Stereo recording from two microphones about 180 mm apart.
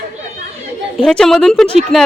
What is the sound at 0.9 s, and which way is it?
A woman's voice, 5° left (ahead or behind).